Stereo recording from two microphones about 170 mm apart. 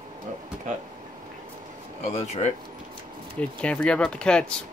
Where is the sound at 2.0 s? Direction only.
40° left (ahead or behind).